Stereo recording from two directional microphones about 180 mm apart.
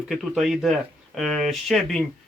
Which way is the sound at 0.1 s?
Centre (ahead or behind).